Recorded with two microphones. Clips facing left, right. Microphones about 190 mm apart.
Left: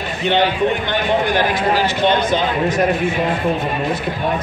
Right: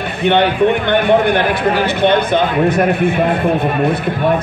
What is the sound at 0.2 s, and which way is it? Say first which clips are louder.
A man's voice: right 4 dB; 60° right (ahead or behind).